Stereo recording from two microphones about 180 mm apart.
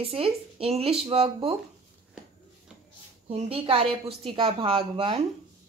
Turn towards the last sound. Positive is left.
turn(degrees=-30)  # may be behind; listen again after turning